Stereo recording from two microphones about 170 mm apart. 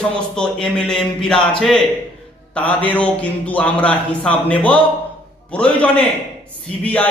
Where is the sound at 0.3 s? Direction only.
5° left (ahead or behind).